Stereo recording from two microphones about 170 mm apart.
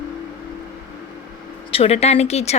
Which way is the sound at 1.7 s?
35° left (ahead or behind).